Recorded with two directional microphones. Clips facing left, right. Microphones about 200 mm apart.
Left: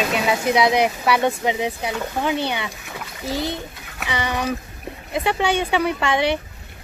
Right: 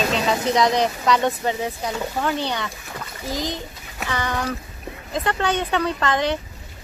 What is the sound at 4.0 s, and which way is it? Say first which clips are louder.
Speech: left 1 dB; 10° left (ahead or behind).